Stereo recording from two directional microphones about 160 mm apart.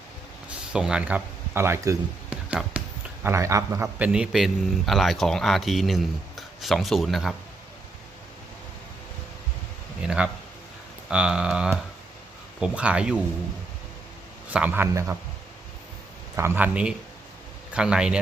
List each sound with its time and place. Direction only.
0.7 s speech: 5° right (ahead or behind)
2.3 s a sound: 5° right (ahead or behind)
3.2 s speech: 20° right (ahead or behind)
3.9 s speech: 10° right (ahead or behind)
10.2 s speech: 5° right (ahead or behind)
14.5 s speech: 10° right (ahead or behind)
16.3 s speech: 15° right (ahead or behind)